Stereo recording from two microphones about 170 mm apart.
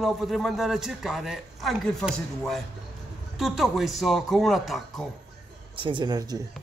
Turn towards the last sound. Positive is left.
turn(degrees=-20)  # may be behind; listen again after turning